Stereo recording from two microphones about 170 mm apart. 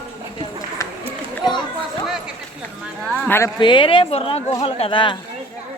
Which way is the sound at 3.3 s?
15° left (ahead or behind).